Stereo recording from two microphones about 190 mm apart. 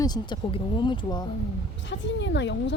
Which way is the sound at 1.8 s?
70° left (ahead or behind).